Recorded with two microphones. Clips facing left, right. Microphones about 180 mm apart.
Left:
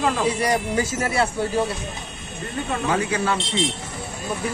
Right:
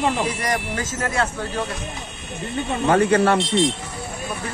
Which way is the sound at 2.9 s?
55° right (ahead or behind).